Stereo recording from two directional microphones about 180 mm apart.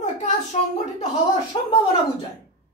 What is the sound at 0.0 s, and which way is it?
Speech, 40° left (ahead or behind).